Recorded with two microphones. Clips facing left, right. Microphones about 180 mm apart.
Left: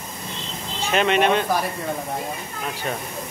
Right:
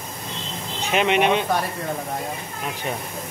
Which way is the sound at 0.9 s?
15° right (ahead or behind).